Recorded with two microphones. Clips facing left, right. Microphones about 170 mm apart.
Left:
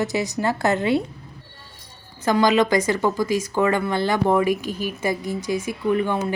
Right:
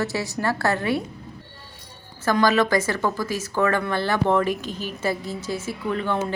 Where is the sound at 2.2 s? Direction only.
15° left (ahead or behind).